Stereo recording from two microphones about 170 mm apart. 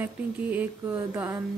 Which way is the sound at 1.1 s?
15° right (ahead or behind).